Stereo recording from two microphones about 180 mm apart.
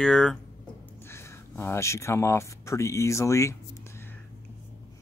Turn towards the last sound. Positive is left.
turn(degrees=15)  # may be behind; listen again after turning